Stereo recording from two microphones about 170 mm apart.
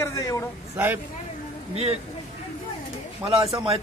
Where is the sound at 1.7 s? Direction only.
35° right (ahead or behind).